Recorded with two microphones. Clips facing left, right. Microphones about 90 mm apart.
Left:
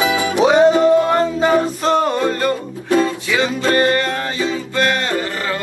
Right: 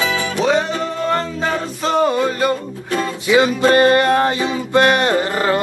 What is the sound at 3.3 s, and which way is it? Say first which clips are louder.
Music: right 7 dB; 20° right (ahead or behind).